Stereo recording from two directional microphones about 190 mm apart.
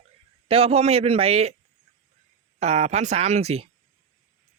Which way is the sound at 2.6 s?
35° right (ahead or behind).